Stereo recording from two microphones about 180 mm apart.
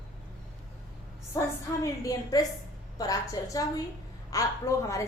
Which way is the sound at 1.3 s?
20° left (ahead or behind).